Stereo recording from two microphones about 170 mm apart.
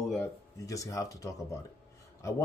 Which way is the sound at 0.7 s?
20° left (ahead or behind).